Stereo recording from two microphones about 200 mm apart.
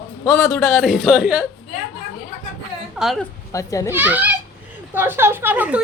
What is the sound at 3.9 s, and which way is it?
A woman's voice, 10° right (ahead or behind).